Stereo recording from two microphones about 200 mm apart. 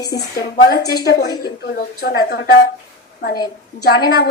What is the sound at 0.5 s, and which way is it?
Speech, 50° left (ahead or behind).